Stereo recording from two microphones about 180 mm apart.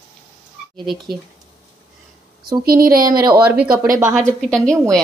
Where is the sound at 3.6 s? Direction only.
50° right (ahead or behind).